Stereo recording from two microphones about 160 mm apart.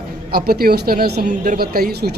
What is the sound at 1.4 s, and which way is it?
Speech, 60° right (ahead or behind).